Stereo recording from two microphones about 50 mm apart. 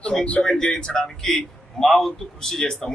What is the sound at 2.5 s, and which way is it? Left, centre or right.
Speech, centre.